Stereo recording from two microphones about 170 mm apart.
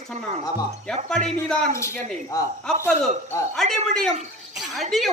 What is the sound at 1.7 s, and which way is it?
Speech, 15° left (ahead or behind).